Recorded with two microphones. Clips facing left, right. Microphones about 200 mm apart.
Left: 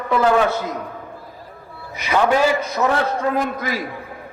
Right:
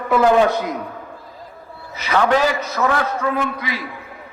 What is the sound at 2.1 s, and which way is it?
Speech, 10° left (ahead or behind).